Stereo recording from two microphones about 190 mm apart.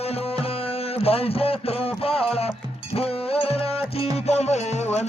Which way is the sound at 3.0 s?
30° left (ahead or behind).